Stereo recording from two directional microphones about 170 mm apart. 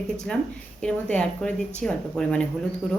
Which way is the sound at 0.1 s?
5° left (ahead or behind).